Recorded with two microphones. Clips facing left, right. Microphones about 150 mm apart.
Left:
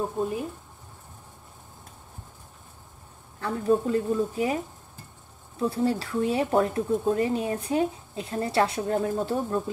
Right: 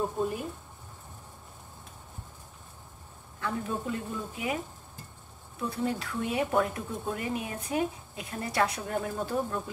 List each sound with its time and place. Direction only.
3.3 s speech: 35° left (ahead or behind)
5.6 s speech: 30° left (ahead or behind)